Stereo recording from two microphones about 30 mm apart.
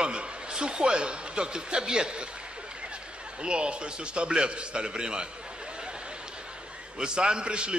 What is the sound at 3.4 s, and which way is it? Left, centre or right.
A man's voice, right.